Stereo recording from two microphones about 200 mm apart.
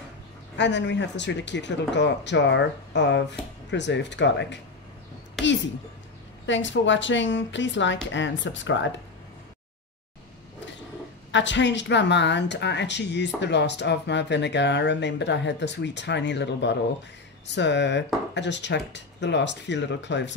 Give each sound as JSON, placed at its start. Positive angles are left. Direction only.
{"t": 0.6, "sound": "speech", "side_deg": 60}
{"t": 5.4, "sound": "a sound", "side_deg": 0}
{"t": 6.4, "sound": "speech", "side_deg": 65}
{"t": 11.3, "sound": "speech", "side_deg": 65}